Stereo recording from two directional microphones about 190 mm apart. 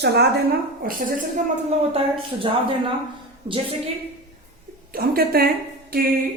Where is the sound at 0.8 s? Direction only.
45° right (ahead or behind).